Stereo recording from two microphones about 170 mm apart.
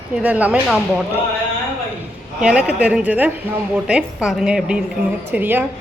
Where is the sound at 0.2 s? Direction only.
10° right (ahead or behind).